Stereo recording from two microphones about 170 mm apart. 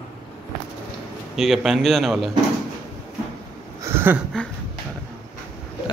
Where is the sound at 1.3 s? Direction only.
Centre (ahead or behind).